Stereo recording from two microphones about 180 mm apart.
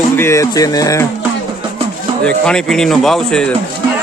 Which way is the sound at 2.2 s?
5° left (ahead or behind).